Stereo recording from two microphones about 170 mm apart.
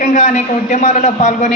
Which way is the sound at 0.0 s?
50° left (ahead or behind).